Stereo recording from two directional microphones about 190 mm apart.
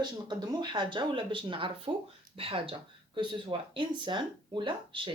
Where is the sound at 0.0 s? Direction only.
20° right (ahead or behind).